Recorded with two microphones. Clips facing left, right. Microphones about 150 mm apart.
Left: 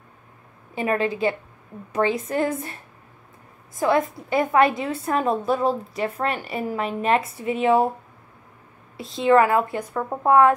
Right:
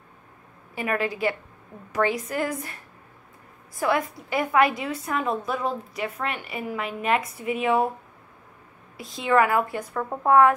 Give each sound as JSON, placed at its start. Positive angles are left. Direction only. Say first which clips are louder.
{"t": 0.7, "sound": "a woman's voice", "louder": "left 4 dB", "side_deg": 25}
{"t": 8.9, "sound": "a woman's voice", "louder": "left 4 dB", "side_deg": 25}
{"t": 9.9, "sound": "a woman's voice", "louder": "left 1 dB", "side_deg": 15}